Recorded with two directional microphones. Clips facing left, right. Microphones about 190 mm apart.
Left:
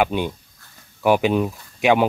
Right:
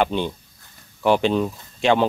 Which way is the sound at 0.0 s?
10° left (ahead or behind).